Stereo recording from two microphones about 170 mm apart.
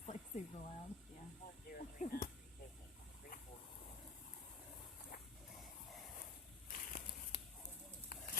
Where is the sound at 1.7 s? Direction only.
60° left (ahead or behind).